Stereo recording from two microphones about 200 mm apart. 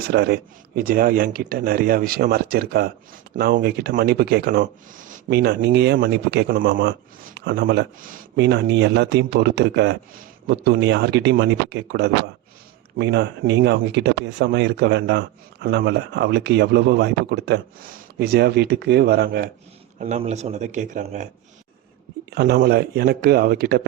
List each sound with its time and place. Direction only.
0.1 s speech: 55° right (ahead or behind)
20.0 s speech: 35° right (ahead or behind)
22.3 s speech: 55° right (ahead or behind)